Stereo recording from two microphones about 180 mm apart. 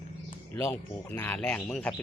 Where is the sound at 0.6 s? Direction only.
10° left (ahead or behind).